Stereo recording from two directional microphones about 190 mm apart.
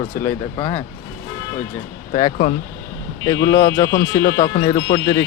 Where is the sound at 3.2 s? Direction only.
25° left (ahead or behind).